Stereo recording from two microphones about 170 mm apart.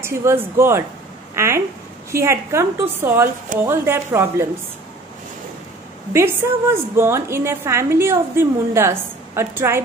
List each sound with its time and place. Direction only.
0.0 s a woman's voice: 15° right (ahead or behind)
6.1 s a woman's voice: 15° right (ahead or behind)